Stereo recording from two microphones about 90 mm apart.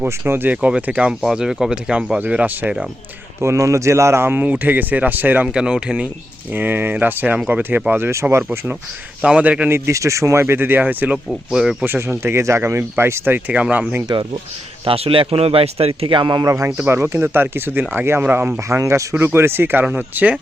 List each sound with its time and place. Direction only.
0.0 s speech: 20° right (ahead or behind)
1.2 s speech: 5° right (ahead or behind)
3.4 s speech: 35° right (ahead or behind); by 6.1 s 10° right (ahead or behind)
6.5 s speech: 20° right (ahead or behind)
7.9 s speech: 25° right (ahead or behind)
9.2 s speech: 15° right (ahead or behind)
9.7 s speech: 35° right (ahead or behind)
10.4 s speech: 25° right (ahead or behind)
11.5 s speech: 5° right (ahead or behind)
11.9 s speech: 25° right (ahead or behind)
14.1 s speech: 60° right (ahead or behind)
14.8 s speech: 90° right; by 16.4 s 60° right (ahead or behind)
16.4 s speech: 35° right (ahead or behind)
18.8 s speech: 35° right (ahead or behind); by 20.3 s 20° right (ahead or behind)